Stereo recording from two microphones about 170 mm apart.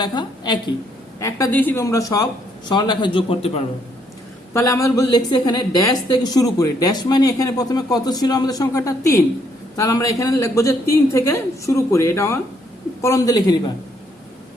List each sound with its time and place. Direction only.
0.0 s speech: 25° left (ahead or behind)
1.2 s speech: 15° left (ahead or behind); by 3.6 s 35° left (ahead or behind)
4.5 s speech: 20° left (ahead or behind)